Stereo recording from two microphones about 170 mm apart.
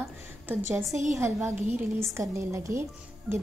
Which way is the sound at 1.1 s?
15° right (ahead or behind).